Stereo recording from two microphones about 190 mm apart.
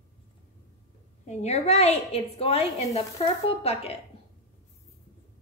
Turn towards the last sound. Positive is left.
turn(degrees=30)  # may be behind; listen again after turning